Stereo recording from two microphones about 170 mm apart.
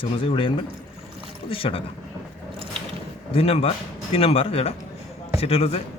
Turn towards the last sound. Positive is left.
turn(degrees=35)  # may be behind; listen again after turning